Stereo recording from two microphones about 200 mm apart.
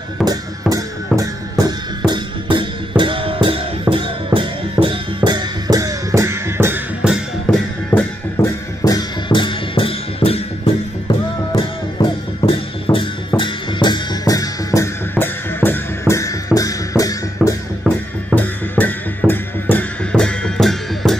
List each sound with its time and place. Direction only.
0.2 s music: 20° right (ahead or behind)
7.5 s music: 5° left (ahead or behind)
17.9 s music: 5° right (ahead or behind)
18.3 s music: 10° left (ahead or behind)